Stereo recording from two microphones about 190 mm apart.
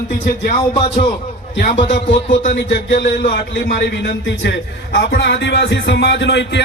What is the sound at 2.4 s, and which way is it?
Speech, 50° left (ahead or behind).